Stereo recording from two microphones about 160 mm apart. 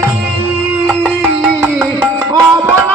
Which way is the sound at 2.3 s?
15° right (ahead or behind).